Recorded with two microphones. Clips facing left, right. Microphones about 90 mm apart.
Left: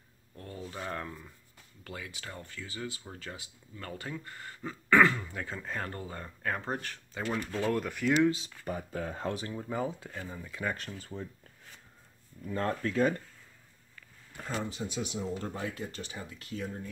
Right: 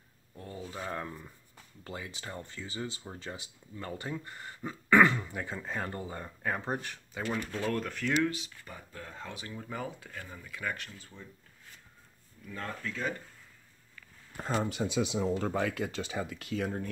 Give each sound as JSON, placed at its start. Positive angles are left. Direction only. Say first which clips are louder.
{"t": 0.4, "sound": "speech", "louder": "even", "side_deg": -5}
{"t": 1.9, "sound": "speech", "louder": "right 2 dB", "side_deg": -25}
{"t": 7.2, "sound": "speech", "louder": "left 2 dB", "side_deg": 5}
{"t": 8.9, "sound": "speech", "louder": "left 7 dB", "side_deg": 65}
{"t": 9.6, "sound": "speech", "louder": "left 5 dB", "side_deg": 25}
{"t": 10.9, "sound": "speech", "louder": "left 9 dB", "side_deg": 45}
{"t": 12.6, "sound": "speech", "louder": "left 8 dB", "side_deg": 50}
{"t": 14.3, "sound": "speech", "louder": "right 4 dB", "side_deg": -30}
{"t": 14.7, "sound": "speech", "louder": "right 5 dB", "side_deg": -80}